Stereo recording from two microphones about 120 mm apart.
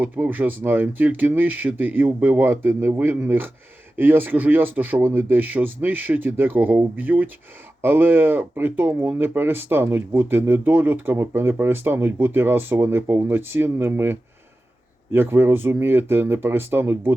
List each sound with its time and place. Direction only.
0.0 s speech: 15° right (ahead or behind)